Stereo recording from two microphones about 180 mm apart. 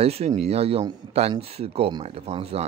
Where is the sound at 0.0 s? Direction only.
35° right (ahead or behind).